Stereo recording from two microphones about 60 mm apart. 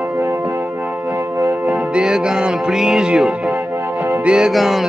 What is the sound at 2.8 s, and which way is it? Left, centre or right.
Music, centre.